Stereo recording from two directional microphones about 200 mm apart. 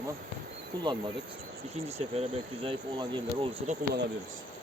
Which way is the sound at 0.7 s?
20° right (ahead or behind).